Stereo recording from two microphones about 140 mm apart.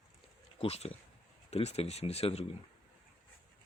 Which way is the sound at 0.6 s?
45° left (ahead or behind).